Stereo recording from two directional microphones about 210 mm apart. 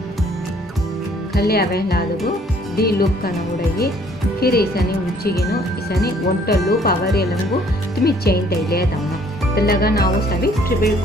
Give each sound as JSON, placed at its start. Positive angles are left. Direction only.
{"t": 1.3, "sound": "speech", "side_deg": 50}
{"t": 4.4, "sound": "speech", "side_deg": 45}